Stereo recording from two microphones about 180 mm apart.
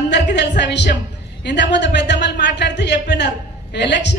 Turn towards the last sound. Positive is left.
turn(degrees=75)  # may be behind; listen again after turning